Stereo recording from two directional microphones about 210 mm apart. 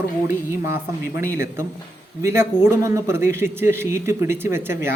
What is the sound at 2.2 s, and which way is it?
A man's voice, 10° right (ahead or behind).